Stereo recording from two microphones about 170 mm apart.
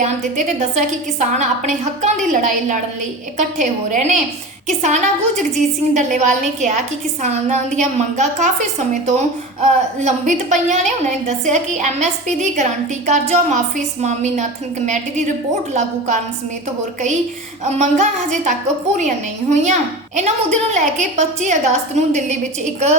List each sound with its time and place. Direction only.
0.0 s a woman's voice: 45° right (ahead or behind)
17.7 s a sound: 40° right (ahead or behind)
18.9 s a woman's voice: 45° right (ahead or behind)